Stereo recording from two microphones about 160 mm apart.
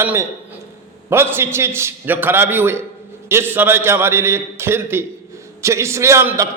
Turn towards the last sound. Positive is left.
turn(degrees=-20)  # may be behind; listen again after turning